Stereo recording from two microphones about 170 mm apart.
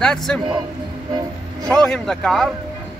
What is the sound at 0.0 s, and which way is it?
Speech, 5° left (ahead or behind).